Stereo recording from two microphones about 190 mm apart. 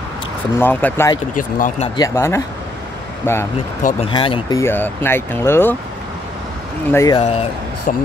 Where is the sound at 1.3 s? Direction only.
45° left (ahead or behind).